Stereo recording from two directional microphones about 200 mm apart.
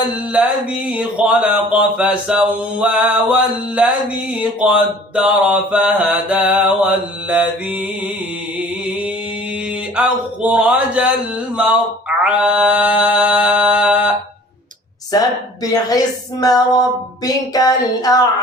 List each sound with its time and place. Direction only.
0.3 s speech: 5° right (ahead or behind)
9.9 s speech: 5° right (ahead or behind)
15.1 s a woman's voice: 20° left (ahead or behind)